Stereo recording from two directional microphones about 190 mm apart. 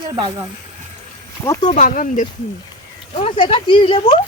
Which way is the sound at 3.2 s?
30° left (ahead or behind).